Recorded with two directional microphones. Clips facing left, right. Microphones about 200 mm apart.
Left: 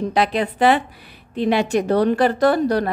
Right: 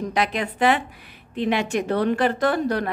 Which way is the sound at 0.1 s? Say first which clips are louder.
Left 4 dB; 35° left (ahead or behind).